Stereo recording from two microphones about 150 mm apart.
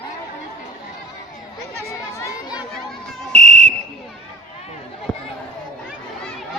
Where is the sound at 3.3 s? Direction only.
50° right (ahead or behind).